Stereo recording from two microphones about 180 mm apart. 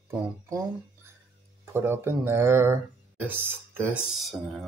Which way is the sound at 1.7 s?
10° right (ahead or behind).